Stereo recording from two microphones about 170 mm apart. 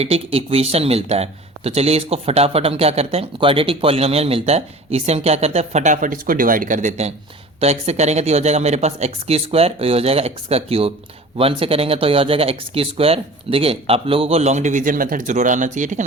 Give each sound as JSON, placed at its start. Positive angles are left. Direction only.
{"t": 0.0, "sound": "speech", "side_deg": -35}